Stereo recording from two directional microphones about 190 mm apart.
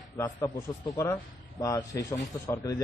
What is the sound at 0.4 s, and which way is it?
A man's voice, 15° left (ahead or behind).